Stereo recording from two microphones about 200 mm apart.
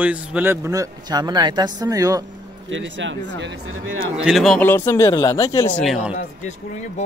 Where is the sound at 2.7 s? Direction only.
65° right (ahead or behind).